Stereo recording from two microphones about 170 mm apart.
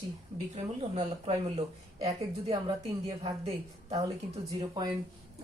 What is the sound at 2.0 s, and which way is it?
Speech, 20° right (ahead or behind).